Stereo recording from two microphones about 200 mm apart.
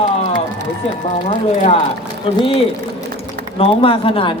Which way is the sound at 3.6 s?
25° left (ahead or behind).